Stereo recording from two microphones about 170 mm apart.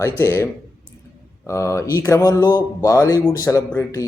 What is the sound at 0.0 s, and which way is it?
Speech, 15° left (ahead or behind).